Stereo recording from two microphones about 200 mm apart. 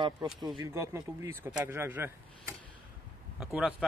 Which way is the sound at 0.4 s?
20° right (ahead or behind).